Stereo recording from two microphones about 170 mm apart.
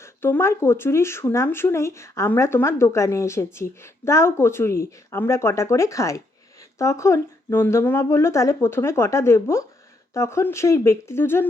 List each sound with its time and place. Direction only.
0.0 s speech: 15° left (ahead or behind)